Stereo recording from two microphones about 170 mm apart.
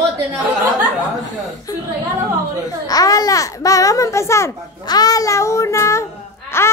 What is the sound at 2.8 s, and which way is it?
A child's voice, 20° left (ahead or behind).